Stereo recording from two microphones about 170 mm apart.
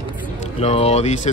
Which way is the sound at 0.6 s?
35° left (ahead or behind).